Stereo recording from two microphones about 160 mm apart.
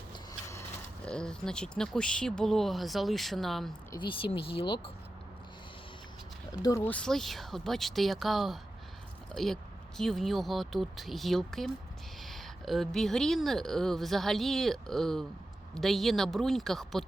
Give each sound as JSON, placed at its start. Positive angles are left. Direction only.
{"t": 1.0, "sound": "speech", "side_deg": 5}
{"t": 4.0, "sound": "speech", "side_deg": 35}
{"t": 6.5, "sound": "speech", "side_deg": 20}